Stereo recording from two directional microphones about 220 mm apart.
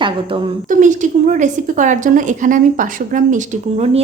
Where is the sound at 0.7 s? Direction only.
35° right (ahead or behind).